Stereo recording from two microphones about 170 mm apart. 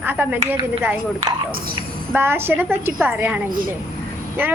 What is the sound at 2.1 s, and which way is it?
A woman's voice, 15° right (ahead or behind).